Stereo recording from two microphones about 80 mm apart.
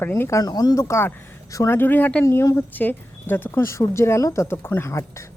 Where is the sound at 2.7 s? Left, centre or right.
Left.